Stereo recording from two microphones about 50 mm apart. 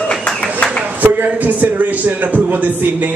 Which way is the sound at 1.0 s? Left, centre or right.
Right.